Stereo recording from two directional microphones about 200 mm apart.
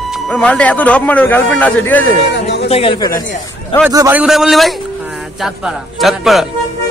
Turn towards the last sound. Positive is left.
turn(degrees=0)  # may be behind; listen again after turning